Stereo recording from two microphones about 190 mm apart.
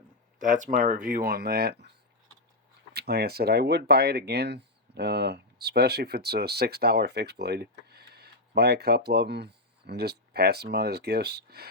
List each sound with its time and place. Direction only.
0.3 s speech: 40° right (ahead or behind)
2.9 s speech: 55° right (ahead or behind)